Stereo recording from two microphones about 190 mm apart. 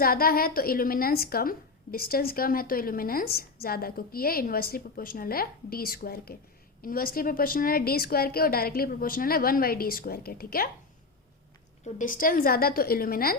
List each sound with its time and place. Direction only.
0.0 s a woman's voice: 50° left (ahead or behind)
11.9 s a woman's voice: 45° left (ahead or behind)